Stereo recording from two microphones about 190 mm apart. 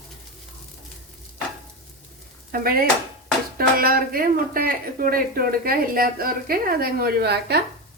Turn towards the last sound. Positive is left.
turn(degrees=-60)  # may be behind; listen again after turning